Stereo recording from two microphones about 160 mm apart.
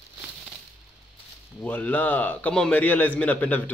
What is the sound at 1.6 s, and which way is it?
Speech, 10° left (ahead or behind).